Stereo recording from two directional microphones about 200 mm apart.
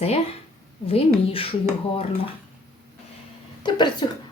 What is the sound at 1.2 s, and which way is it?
Speech, 30° left (ahead or behind).